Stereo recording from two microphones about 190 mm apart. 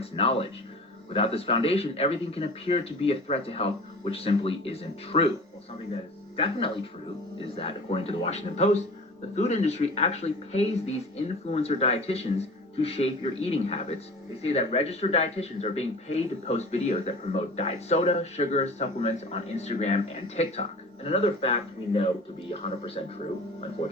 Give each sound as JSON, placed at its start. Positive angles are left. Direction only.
{"t": 0.0, "sound": "speech", "side_deg": 30}
{"t": 6.3, "sound": "speech", "side_deg": 30}